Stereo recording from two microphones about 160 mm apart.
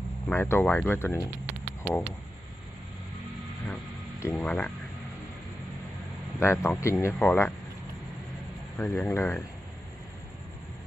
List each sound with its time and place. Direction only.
0.3 s speech: 15° left (ahead or behind)
4.4 s speech: 5° left (ahead or behind)
6.4 s speech: 15° left (ahead or behind)
8.7 s speech: 10° left (ahead or behind)